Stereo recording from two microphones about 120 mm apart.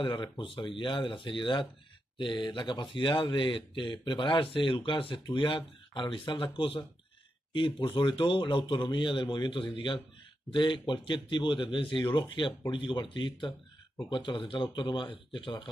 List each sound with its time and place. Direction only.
0.0 s a man's voice: 45° left (ahead or behind)